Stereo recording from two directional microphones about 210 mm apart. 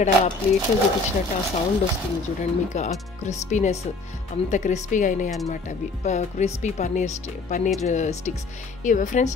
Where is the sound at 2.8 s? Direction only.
35° left (ahead or behind).